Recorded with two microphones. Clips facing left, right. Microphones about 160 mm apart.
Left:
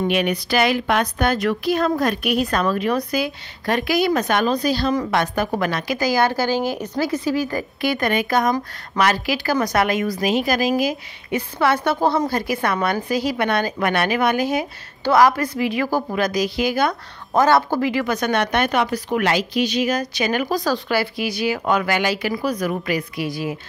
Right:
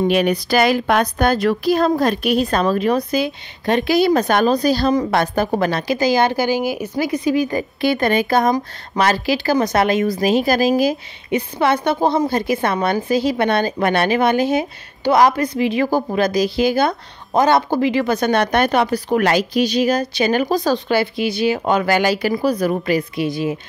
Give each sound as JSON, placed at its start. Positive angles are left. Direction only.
{"t": 0.1, "sound": "a woman's voice", "side_deg": -35}